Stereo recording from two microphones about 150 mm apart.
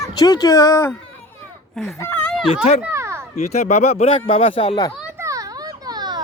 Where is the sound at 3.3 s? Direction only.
45° left (ahead or behind).